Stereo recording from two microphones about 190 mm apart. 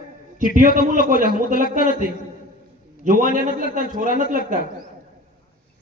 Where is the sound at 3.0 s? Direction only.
45° right (ahead or behind).